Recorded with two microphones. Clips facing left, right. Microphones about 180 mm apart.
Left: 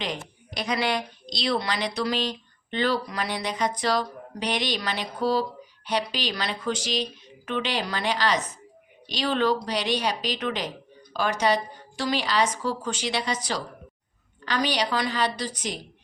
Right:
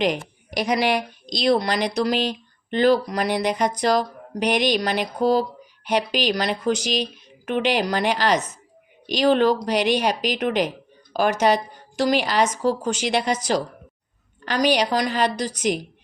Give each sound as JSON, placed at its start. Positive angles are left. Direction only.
{"t": 0.6, "sound": "a woman's voice", "side_deg": -15}
{"t": 1.3, "sound": "a woman's voice", "side_deg": -45}
{"t": 14.7, "sound": "a woman's voice", "side_deg": -45}